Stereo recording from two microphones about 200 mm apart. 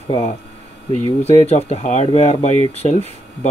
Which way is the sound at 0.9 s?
30° left (ahead or behind).